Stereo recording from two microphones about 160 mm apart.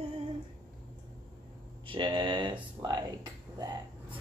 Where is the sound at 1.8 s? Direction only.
30° right (ahead or behind).